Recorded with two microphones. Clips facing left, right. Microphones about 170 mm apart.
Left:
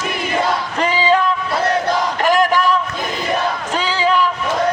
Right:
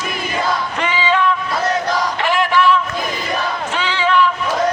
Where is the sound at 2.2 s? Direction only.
40° left (ahead or behind).